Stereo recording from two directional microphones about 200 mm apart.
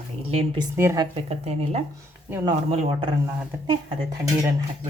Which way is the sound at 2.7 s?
30° right (ahead or behind).